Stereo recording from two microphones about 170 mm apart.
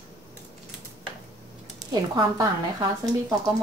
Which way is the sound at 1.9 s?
25° right (ahead or behind).